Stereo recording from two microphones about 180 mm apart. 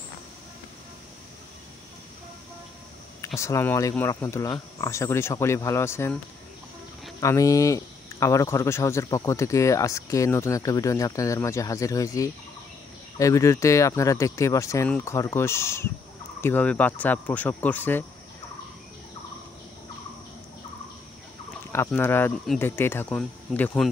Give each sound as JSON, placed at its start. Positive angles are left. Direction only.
{"t": 3.3, "sound": "speech", "side_deg": 15}
{"t": 7.2, "sound": "speech", "side_deg": 20}
{"t": 21.7, "sound": "speech", "side_deg": 10}